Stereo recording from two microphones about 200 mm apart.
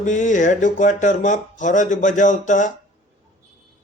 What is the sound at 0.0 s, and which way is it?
Speech, 40° left (ahead or behind).